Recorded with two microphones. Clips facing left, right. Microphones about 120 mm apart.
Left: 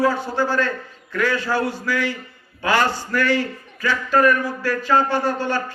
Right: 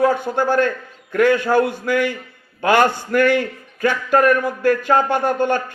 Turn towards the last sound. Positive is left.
turn(degrees=-55)  # may be behind; listen again after turning